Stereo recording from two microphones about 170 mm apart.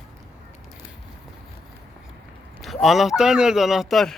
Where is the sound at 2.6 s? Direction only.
Centre (ahead or behind).